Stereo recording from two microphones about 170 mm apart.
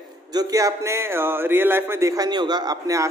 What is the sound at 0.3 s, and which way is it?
Speech, 20° right (ahead or behind).